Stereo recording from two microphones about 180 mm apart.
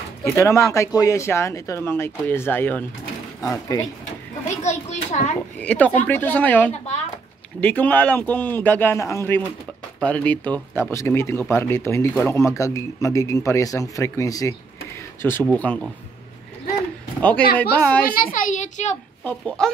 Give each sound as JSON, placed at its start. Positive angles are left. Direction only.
{"t": 0.2, "sound": "speech", "side_deg": 15}
{"t": 4.6, "sound": "speech", "side_deg": 40}
{"t": 5.6, "sound": "speech", "side_deg": 10}
{"t": 17.6, "sound": "speech", "side_deg": 10}
{"t": 18.1, "sound": "a child's voice", "side_deg": 50}
{"t": 19.2, "sound": "speech", "side_deg": 5}